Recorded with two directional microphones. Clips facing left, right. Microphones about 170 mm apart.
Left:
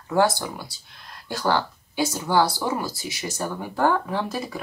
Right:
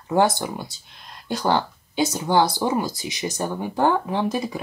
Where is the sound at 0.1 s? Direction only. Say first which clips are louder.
Right 1 dB; 20° right (ahead or behind).